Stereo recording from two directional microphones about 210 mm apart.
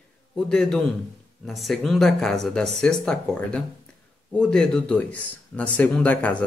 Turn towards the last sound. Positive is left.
turn(degrees=5)  # may be behind; listen again after turning